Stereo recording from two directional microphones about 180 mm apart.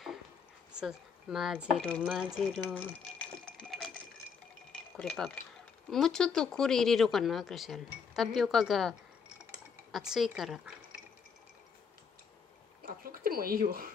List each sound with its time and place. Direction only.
0.7 s speech: centre (ahead or behind)
1.8 s speech: 5° left (ahead or behind)
2.0 s speech: 5° right (ahead or behind)
4.9 s speech: centre (ahead or behind)
9.9 s speech: centre (ahead or behind)
12.8 s a sound: 55° right (ahead or behind)